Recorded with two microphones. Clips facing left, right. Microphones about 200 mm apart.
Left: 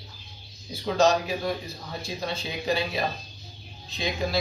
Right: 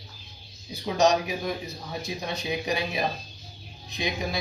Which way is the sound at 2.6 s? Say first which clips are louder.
Left 4 dB; 15° right (ahead or behind).